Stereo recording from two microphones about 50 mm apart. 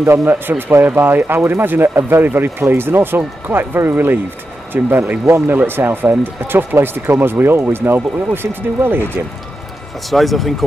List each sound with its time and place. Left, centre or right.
0.0 s speech: right
0.3 s speech: right
10.0 s speech: centre